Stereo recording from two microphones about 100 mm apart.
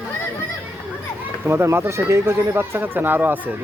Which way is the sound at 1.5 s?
25° right (ahead or behind).